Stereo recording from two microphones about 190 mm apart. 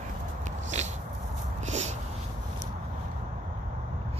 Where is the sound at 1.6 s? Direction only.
35° right (ahead or behind).